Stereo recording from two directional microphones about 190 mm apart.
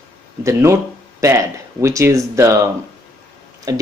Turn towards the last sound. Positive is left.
turn(degrees=-20)  # may be behind; listen again after turning